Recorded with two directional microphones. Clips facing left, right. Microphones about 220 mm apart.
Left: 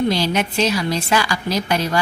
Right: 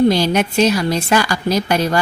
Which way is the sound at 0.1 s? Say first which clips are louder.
Right 4 dB; 50° right (ahead or behind).